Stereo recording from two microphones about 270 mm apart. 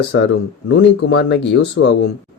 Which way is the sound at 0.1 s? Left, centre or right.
Left.